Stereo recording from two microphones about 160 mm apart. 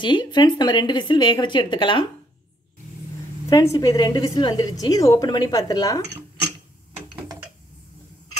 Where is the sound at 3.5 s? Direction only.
20° left (ahead or behind).